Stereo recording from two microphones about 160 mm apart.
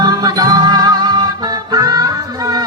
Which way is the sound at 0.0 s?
25° right (ahead or behind).